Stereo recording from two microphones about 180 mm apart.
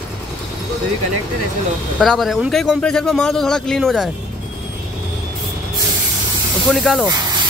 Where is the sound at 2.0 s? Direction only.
Centre (ahead or behind).